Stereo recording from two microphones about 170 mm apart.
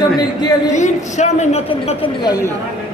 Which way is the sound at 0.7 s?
45° left (ahead or behind).